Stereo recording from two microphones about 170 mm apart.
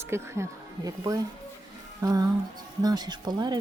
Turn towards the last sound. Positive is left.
turn(degrees=-25)  # may be behind; listen again after turning